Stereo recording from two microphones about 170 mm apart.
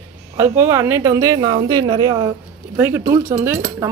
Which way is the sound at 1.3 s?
30° right (ahead or behind).